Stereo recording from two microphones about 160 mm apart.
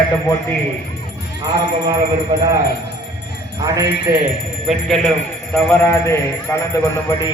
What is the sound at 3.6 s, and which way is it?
Speech, 20° right (ahead or behind).